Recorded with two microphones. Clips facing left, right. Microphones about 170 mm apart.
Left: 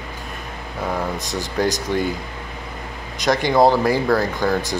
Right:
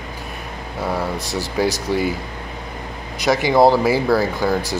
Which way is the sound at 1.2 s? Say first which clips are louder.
Right 2 dB; 20° left (ahead or behind).